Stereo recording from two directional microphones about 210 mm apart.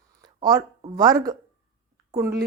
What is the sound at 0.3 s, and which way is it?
Speech, 25° right (ahead or behind).